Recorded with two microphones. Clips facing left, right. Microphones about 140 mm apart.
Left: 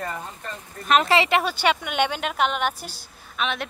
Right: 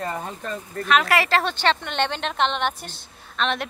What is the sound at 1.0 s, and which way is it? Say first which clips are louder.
Speech: left 1 dB; 25° left (ahead or behind).